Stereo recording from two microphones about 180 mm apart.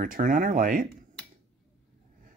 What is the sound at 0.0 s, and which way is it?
Speech, 50° right (ahead or behind).